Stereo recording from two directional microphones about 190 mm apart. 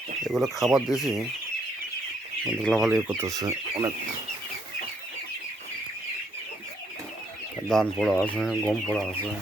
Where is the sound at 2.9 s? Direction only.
10° right (ahead or behind).